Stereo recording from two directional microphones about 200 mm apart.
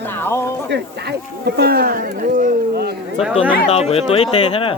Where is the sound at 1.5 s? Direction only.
50° right (ahead or behind).